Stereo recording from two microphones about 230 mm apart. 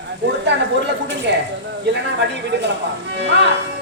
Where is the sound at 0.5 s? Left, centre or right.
Right.